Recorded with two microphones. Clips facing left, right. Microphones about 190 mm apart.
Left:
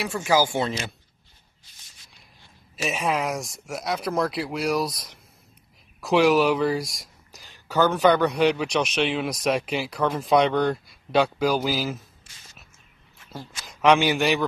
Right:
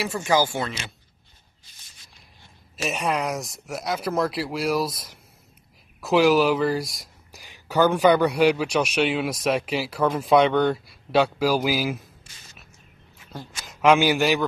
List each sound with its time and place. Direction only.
0.0 s speech: centre (ahead or behind)
0.5 s speech: 25° left (ahead or behind)
2.8 s speech: centre (ahead or behind)
7.4 s a man's voice: 10° right (ahead or behind)
13.3 s a man's voice: centre (ahead or behind)